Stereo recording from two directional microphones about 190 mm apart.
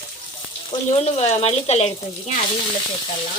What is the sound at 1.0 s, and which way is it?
Speech, 35° left (ahead or behind).